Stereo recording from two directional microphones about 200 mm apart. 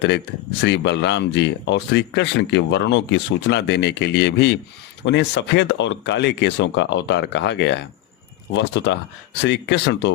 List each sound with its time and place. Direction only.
0.6 s speech: 60° left (ahead or behind)